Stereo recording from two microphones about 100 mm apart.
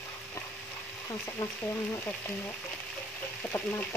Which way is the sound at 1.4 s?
30° left (ahead or behind).